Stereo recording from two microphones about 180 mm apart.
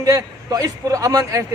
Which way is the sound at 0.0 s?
20° right (ahead or behind).